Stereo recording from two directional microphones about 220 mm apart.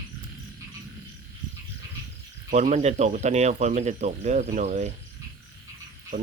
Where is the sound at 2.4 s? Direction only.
35° right (ahead or behind).